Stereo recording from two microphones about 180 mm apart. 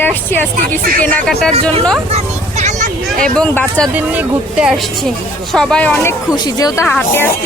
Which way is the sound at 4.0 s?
5° right (ahead or behind).